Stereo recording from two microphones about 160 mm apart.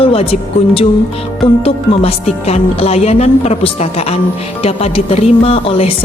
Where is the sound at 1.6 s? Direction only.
40° left (ahead or behind).